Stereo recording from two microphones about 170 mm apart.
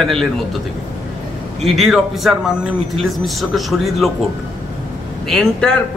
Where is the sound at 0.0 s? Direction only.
Centre (ahead or behind).